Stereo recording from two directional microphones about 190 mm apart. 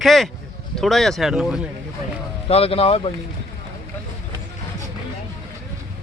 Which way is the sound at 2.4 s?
30° left (ahead or behind).